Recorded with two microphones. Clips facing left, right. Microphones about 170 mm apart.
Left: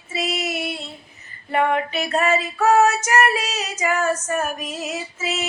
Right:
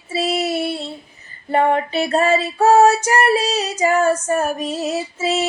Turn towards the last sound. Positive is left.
turn(degrees=-30)  # may be behind; listen again after turning